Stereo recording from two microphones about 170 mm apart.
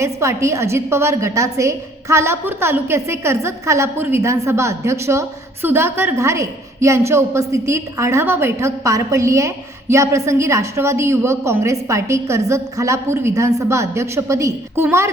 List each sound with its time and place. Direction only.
0.0 s a woman's voice: 15° right (ahead or behind)